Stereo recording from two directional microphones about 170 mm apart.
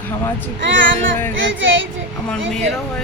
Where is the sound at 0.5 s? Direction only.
90° right.